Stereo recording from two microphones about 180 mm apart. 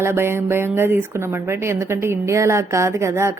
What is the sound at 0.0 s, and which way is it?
Speech, 15° right (ahead or behind).